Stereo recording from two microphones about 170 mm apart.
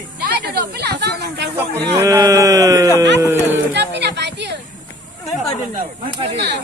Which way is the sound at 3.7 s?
85° right.